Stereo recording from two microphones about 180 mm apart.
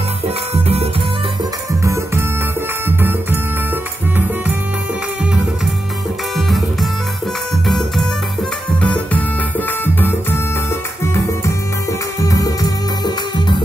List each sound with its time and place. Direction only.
1.7 s music: 15° right (ahead or behind)
6.3 s music: centre (ahead or behind)
8.8 s music: 10° left (ahead or behind)